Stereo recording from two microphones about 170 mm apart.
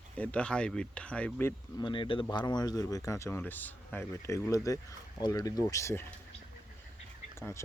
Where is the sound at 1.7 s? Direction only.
25° left (ahead or behind).